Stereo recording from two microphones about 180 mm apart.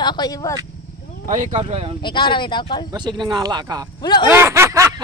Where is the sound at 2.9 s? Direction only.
25° right (ahead or behind).